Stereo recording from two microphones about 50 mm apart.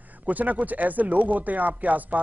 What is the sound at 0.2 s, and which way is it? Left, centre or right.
Speech, right.